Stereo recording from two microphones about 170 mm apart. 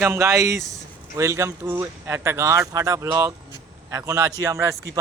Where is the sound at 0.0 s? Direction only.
15° right (ahead or behind).